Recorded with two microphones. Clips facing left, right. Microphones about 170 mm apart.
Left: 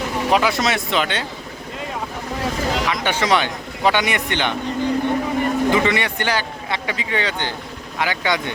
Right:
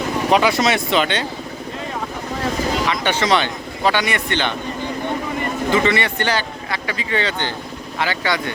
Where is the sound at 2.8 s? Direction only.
10° left (ahead or behind).